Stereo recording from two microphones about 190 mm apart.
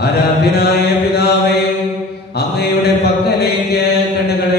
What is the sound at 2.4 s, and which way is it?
Mantra, 60° left (ahead or behind).